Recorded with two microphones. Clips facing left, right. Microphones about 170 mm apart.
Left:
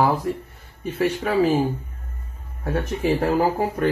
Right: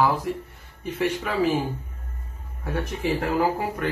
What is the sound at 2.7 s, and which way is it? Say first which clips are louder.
Speech: left 4 dB; 35° left (ahead or behind).